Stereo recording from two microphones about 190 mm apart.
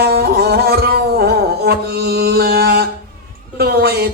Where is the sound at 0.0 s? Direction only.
55° right (ahead or behind).